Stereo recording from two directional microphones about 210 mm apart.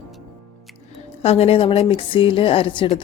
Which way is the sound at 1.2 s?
30° left (ahead or behind).